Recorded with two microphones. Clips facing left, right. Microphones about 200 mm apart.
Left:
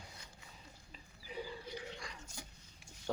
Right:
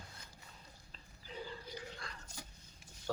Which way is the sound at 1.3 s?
10° left (ahead or behind).